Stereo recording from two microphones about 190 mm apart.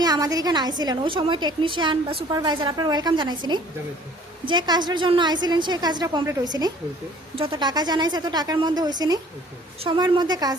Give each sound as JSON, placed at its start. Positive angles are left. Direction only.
{"t": 0.0, "sound": "a woman's voice", "side_deg": -20}